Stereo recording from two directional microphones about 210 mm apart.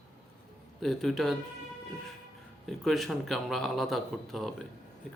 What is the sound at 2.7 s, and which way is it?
A man's voice, centre (ahead or behind).